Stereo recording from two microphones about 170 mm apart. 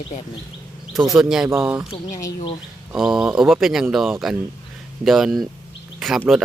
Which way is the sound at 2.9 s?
5° right (ahead or behind).